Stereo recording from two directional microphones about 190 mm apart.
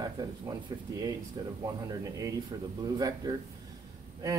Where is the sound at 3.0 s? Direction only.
20° right (ahead or behind).